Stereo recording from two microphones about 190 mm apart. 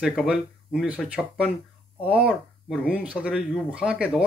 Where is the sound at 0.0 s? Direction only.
5° right (ahead or behind).